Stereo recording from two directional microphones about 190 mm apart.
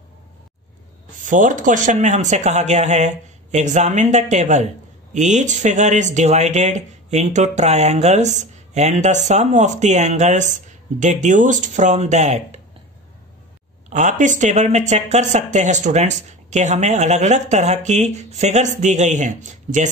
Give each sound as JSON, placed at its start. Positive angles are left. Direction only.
{"t": 1.2, "sound": "speech", "side_deg": -40}
{"t": 13.8, "sound": "speech", "side_deg": -40}